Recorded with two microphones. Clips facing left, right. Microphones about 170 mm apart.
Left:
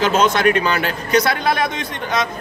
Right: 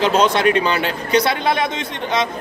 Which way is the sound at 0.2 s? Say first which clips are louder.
Even; 30° right (ahead or behind).